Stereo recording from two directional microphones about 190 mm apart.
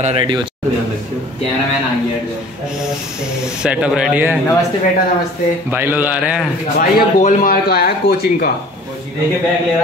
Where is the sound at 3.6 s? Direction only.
5° right (ahead or behind).